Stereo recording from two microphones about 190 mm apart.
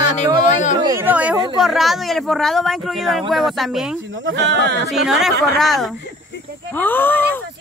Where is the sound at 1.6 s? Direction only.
Centre (ahead or behind).